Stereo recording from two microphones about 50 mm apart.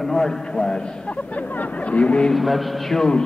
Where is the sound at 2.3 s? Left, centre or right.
Centre.